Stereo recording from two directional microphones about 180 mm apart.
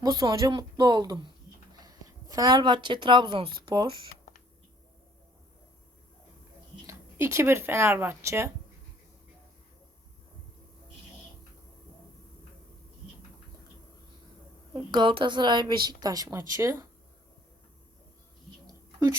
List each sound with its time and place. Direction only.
0.0 s a woman's voice: 20° right (ahead or behind)
6.8 s speech: 15° right (ahead or behind)
14.7 s a woman's voice: 25° right (ahead or behind)